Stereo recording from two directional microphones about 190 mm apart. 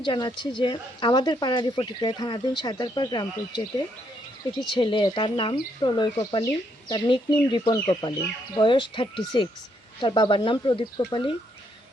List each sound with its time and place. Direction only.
0.0 s speech: 25° left (ahead or behind)